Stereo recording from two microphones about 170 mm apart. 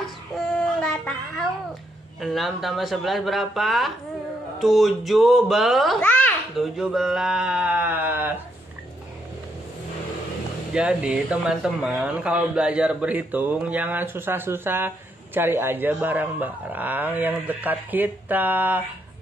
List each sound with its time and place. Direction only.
0.6 s a sound: 5° left (ahead or behind)
2.1 s a child's voice: centre (ahead or behind)
6.8 s speech: centre (ahead or behind)
10.7 s speech: 5° right (ahead or behind)